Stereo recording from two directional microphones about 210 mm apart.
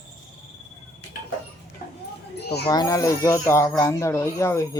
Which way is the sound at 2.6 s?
20° left (ahead or behind).